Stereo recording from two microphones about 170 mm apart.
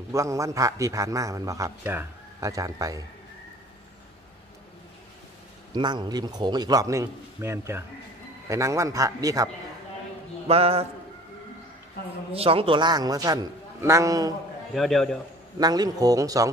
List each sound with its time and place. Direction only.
0.1 s a man's voice: 20° right (ahead or behind)
5.7 s a man's voice: 25° right (ahead or behind)
10.5 s a man's voice: 35° right (ahead or behind)
12.3 s a man's voice: 35° right (ahead or behind)
14.7 s a man's voice: centre (ahead or behind)
15.6 s a man's voice: 20° right (ahead or behind)